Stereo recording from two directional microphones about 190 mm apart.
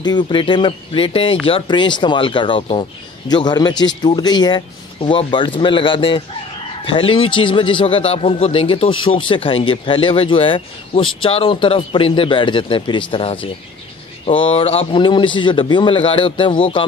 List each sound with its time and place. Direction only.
0.0 s speech: 25° left (ahead or behind)